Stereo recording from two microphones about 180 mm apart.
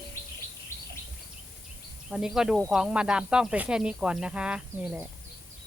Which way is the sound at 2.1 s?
5° right (ahead or behind).